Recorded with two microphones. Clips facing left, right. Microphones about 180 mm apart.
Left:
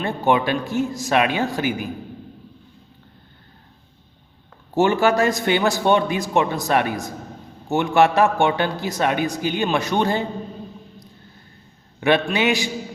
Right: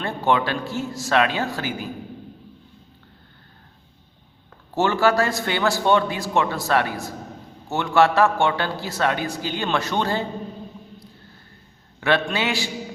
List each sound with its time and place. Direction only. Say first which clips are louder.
0.0 s a man's voice: left 2 dB; 15° left (ahead or behind)
4.7 s a man's voice: left 2 dB; 15° left (ahead or behind)
11.9 s a man's voice: left 3 dB; 15° left (ahead or behind)